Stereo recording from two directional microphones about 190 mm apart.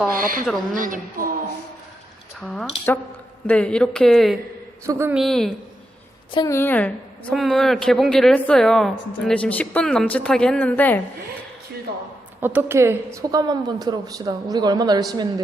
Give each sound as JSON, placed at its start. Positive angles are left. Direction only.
{"t": 0.1, "sound": "a woman's voice", "side_deg": -45}
{"t": 2.4, "sound": "a woman's voice", "side_deg": 5}
{"t": 4.9, "sound": "a woman's voice", "side_deg": -10}
{"t": 5.2, "sound": "a woman's voice", "side_deg": 0}
{"t": 6.3, "sound": "a woman's voice", "side_deg": 15}
{"t": 12.4, "sound": "a woman's voice", "side_deg": -10}